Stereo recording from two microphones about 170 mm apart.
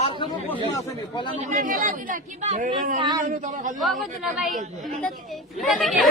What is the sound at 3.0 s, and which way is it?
Speech, 25° right (ahead or behind).